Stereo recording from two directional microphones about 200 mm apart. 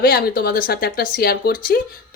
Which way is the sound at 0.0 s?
50° left (ahead or behind).